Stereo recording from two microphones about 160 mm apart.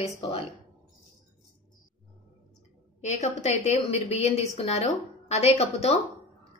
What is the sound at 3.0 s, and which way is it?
A woman's voice, 45° left (ahead or behind).